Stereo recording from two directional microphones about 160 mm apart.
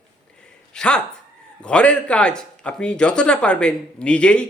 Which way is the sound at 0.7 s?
5° left (ahead or behind).